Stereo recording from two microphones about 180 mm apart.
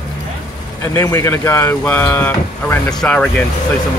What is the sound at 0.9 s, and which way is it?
Speech, 15° left (ahead or behind).